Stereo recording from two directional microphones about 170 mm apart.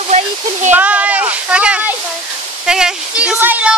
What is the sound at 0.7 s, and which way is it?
Speech, 10° right (ahead or behind).